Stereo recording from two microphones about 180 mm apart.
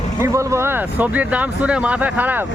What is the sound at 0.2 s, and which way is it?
Speech, 15° right (ahead or behind).